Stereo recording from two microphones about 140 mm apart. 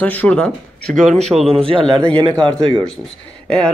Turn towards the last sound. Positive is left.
turn(degrees=5)  # may be behind; listen again after turning